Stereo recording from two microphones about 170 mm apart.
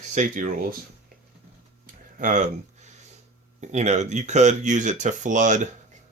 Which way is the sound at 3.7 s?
40° right (ahead or behind).